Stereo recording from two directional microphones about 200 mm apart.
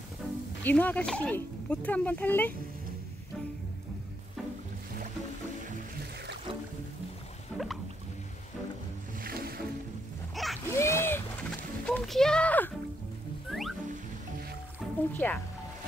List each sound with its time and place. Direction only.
0.7 s speech: 10° left (ahead or behind)
7.5 s music: centre (ahead or behind)
9.2 s boat: 50° right (ahead or behind)
10.3 s a sound: centre (ahead or behind)
10.7 s a sound: 15° left (ahead or behind)
11.8 s a child's voice: 5° left (ahead or behind)
13.5 s music: centre (ahead or behind)
15.1 s speech: 10° left (ahead or behind)